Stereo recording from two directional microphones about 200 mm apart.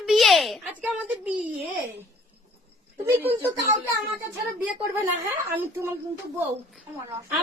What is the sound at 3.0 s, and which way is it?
Speech, 10° right (ahead or behind).